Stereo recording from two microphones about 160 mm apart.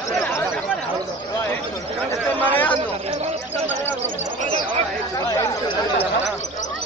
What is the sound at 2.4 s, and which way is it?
Speech, 10° left (ahead or behind).